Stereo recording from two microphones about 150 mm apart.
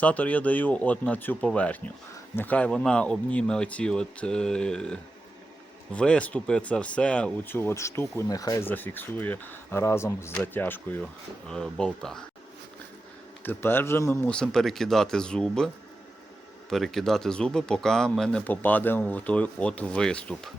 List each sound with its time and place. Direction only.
0.0 s speech: 10° left (ahead or behind)
8.7 s speech: 15° left (ahead or behind)
13.4 s speech: 15° left (ahead or behind)